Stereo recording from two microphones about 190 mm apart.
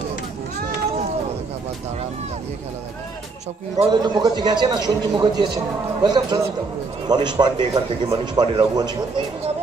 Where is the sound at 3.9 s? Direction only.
20° right (ahead or behind).